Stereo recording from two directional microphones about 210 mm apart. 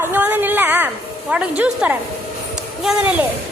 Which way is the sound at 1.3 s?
5° right (ahead or behind).